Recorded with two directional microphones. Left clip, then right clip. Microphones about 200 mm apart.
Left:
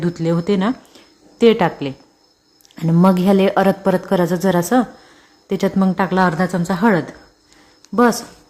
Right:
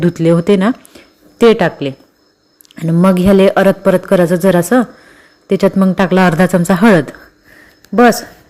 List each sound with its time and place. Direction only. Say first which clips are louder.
0.0 s speech: right 8 dB; 20° right (ahead or behind)
3.0 s a woman's voice: right 5 dB; 10° right (ahead or behind)